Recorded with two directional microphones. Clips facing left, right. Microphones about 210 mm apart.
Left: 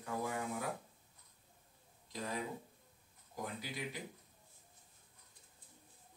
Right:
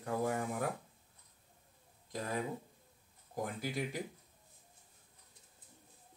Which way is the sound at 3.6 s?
45° right (ahead or behind).